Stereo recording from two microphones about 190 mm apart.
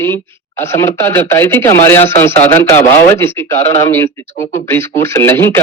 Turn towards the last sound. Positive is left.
turn(degrees=10)  # may be behind; listen again after turning